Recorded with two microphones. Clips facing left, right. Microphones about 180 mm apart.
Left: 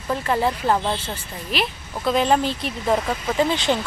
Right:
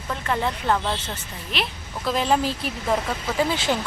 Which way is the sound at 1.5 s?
5° left (ahead or behind).